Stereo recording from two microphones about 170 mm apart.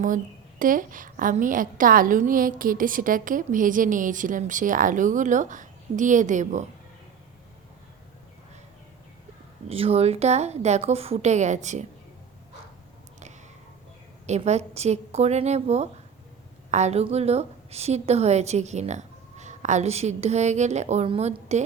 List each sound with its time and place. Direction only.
0.6 s a woman's voice: 50° right (ahead or behind)
9.6 s a woman's voice: 35° right (ahead or behind)
14.3 s a woman's voice: 40° right (ahead or behind)